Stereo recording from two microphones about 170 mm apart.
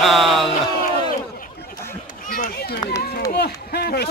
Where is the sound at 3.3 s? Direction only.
70° left (ahead or behind).